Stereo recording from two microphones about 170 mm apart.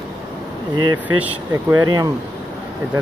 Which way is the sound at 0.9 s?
10° right (ahead or behind).